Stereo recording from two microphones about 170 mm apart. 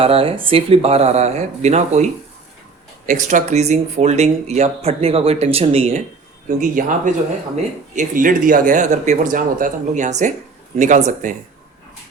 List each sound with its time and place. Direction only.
0.0 s speech: 35° right (ahead or behind)
3.1 s speech: 50° right (ahead or behind)
6.5 s speech: 50° right (ahead or behind)